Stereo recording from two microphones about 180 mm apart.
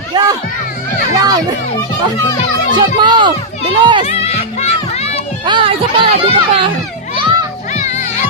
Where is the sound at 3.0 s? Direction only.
25° right (ahead or behind).